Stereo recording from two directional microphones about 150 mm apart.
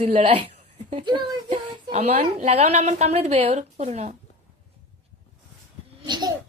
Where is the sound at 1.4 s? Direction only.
45° right (ahead or behind).